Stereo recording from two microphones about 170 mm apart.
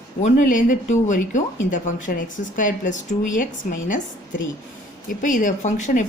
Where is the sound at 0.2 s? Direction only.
45° left (ahead or behind).